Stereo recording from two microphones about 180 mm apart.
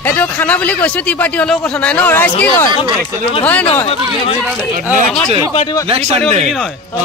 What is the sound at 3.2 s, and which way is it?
Speech, 30° left (ahead or behind).